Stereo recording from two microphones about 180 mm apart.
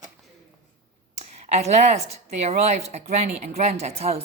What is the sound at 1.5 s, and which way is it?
Speech, 35° right (ahead or behind).